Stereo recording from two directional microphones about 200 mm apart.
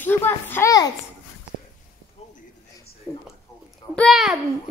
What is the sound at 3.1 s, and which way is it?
A child's voice, 5° left (ahead or behind).